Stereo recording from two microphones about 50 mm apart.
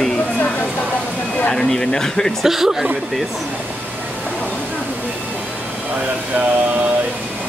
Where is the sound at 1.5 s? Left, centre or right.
Centre.